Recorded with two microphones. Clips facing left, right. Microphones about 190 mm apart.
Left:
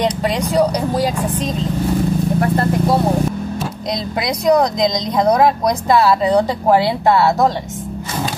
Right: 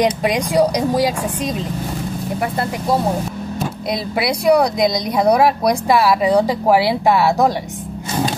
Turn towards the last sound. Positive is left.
turn(degrees=-10)  # may be behind; listen again after turning